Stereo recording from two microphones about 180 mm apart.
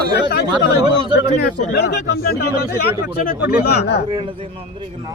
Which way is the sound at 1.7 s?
65° left (ahead or behind).